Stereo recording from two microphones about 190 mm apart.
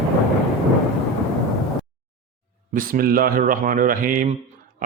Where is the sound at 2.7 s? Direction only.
50° right (ahead or behind).